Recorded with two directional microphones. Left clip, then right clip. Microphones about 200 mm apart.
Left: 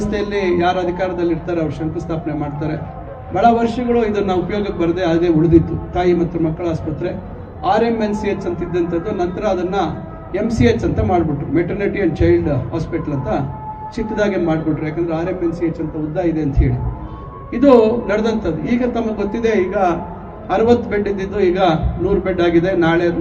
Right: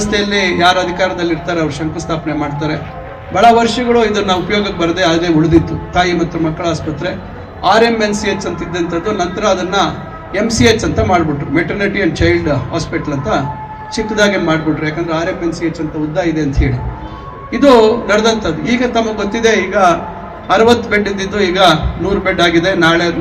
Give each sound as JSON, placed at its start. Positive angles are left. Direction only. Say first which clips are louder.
{"t": 0.0, "sound": "a man's voice", "louder": "right 5 dB", "side_deg": -25}